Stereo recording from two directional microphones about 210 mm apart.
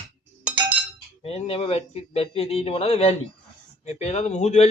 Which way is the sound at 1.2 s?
30° left (ahead or behind).